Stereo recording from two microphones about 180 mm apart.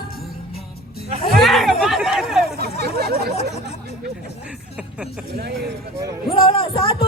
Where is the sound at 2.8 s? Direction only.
60° right (ahead or behind).